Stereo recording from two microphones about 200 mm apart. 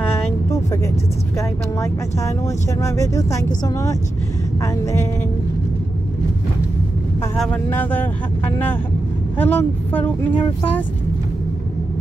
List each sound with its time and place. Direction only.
0.1 s vehicle: 15° left (ahead or behind)
1.8 s speech: 15° left (ahead or behind)
7.3 s speech: 5° left (ahead or behind)
9.4 s speech: 10° left (ahead or behind)